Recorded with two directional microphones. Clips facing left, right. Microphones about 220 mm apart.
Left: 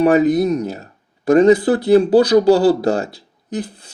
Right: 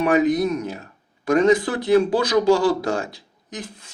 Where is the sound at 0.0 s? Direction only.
35° left (ahead or behind).